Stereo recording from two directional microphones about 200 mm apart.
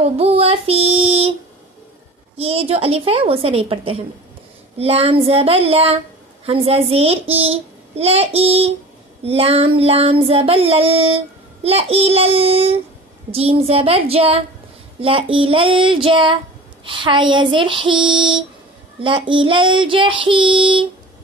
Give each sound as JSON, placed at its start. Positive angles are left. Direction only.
{"t": 0.0, "sound": "child singing", "side_deg": -30}
{"t": 2.3, "sound": "child singing", "side_deg": -30}